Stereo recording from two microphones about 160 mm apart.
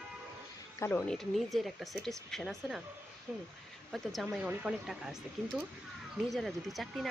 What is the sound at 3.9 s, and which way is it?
Speech, centre (ahead or behind).